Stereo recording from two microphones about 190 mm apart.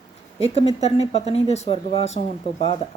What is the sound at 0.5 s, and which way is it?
Speech, 35° left (ahead or behind).